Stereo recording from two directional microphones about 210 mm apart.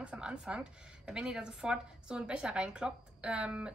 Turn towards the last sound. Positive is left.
turn(degrees=-5)  # may be behind; listen again after turning